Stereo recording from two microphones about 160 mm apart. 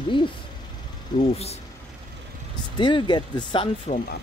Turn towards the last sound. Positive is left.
turn(degrees=30)  # may be behind; listen again after turning